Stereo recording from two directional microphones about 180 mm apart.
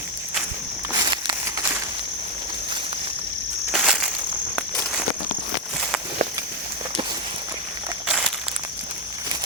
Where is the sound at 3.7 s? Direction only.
5° right (ahead or behind).